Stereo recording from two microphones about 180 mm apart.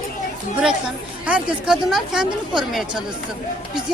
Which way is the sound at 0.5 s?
5° right (ahead or behind).